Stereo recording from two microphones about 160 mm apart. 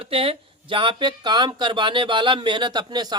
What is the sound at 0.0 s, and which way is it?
Speech, 35° right (ahead or behind).